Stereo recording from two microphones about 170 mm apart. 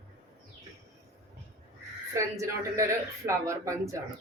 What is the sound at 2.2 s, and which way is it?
A woman's voice, 20° right (ahead or behind).